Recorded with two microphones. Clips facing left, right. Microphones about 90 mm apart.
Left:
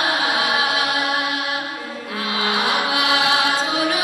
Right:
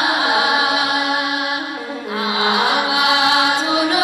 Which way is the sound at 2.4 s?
20° right (ahead or behind).